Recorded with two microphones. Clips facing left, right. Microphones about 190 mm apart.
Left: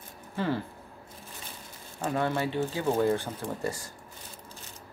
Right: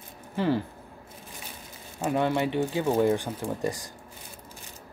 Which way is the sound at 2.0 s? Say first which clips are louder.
Right 3 dB; 15° right (ahead or behind).